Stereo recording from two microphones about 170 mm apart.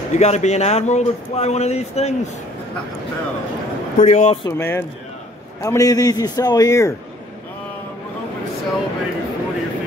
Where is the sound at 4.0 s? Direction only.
40° left (ahead or behind).